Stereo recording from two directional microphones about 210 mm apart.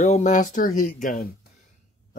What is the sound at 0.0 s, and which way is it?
Speech, 35° left (ahead or behind).